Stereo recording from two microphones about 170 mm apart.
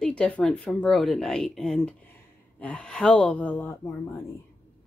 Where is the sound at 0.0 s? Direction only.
5° left (ahead or behind).